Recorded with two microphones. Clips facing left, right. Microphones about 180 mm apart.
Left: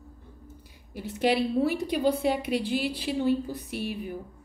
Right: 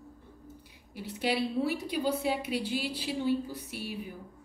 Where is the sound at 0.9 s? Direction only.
50° left (ahead or behind).